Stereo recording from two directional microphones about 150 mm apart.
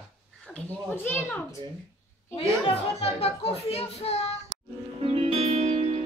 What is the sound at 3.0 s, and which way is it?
A child's voice, 45° left (ahead or behind).